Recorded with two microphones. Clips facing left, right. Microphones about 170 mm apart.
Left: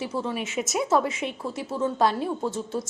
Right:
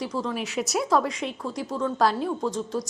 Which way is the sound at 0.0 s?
5° left (ahead or behind).